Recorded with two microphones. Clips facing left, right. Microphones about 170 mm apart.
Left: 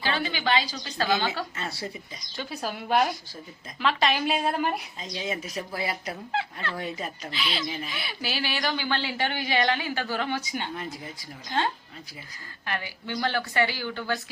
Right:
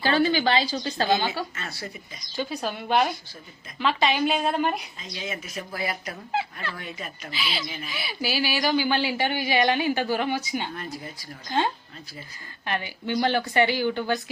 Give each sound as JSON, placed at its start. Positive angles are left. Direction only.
{"t": 0.0, "sound": "a woman's voice", "side_deg": -40}
{"t": 1.5, "sound": "speech", "side_deg": 30}
{"t": 2.3, "sound": "a woman's voice", "side_deg": 0}
{"t": 5.1, "sound": "speech", "side_deg": 35}
{"t": 6.3, "sound": "a woman's voice", "side_deg": -5}
{"t": 6.7, "sound": "speech", "side_deg": 30}
{"t": 7.3, "sound": "a woman's voice", "side_deg": -5}
{"t": 10.8, "sound": "speech", "side_deg": 20}
{"t": 12.6, "sound": "a woman's voice", "side_deg": -20}